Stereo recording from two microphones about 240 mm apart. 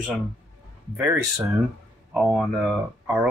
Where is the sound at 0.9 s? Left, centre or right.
Centre.